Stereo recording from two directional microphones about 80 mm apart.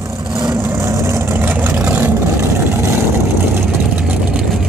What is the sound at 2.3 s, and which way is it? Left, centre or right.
Vehicle, right.